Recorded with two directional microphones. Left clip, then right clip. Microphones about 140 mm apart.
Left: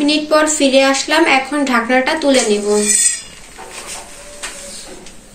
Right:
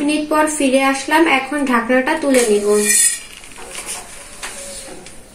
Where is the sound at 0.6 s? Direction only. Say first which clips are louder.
Left 3 dB; 30° right (ahead or behind).